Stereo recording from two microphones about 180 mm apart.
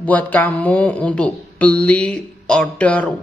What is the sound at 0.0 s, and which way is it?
Speech, 10° left (ahead or behind).